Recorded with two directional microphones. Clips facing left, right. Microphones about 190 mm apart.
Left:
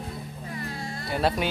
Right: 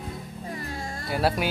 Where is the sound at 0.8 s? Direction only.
45° right (ahead or behind).